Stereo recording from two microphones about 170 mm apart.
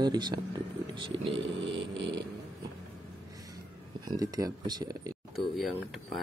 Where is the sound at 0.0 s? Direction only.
25° right (ahead or behind).